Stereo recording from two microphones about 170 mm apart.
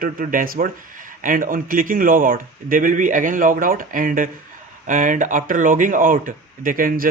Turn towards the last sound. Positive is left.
turn(degrees=-55)  # may be behind; listen again after turning